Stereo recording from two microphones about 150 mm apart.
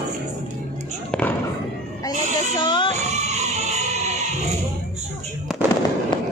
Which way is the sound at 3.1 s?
50° right (ahead or behind).